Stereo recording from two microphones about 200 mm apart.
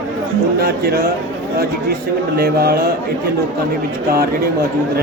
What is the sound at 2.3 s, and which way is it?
Speech, 50° right (ahead or behind).